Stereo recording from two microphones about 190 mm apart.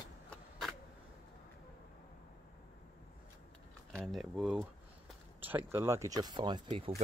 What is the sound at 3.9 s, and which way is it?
Speech, centre (ahead or behind).